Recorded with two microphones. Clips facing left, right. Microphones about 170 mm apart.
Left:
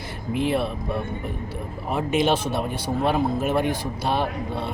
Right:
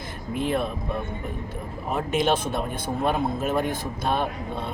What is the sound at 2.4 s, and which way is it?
Speech, 50° right (ahead or behind).